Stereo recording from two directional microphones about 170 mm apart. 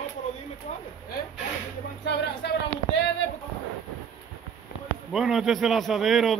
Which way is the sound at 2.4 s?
75° left (ahead or behind).